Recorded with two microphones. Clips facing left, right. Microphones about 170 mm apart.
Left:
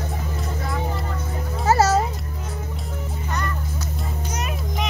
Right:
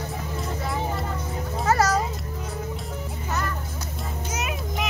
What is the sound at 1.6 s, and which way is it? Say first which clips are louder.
Music: left 4 dB; 25° left (ahead or behind).